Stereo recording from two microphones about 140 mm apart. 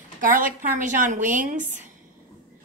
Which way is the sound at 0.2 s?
75° right (ahead or behind).